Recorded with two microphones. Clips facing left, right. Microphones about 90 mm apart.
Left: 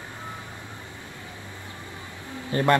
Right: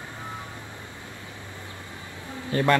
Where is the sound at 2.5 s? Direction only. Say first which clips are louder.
Even; 25° left (ahead or behind).